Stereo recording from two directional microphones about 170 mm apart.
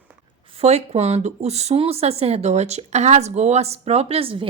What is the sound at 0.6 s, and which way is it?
Speech, 40° right (ahead or behind).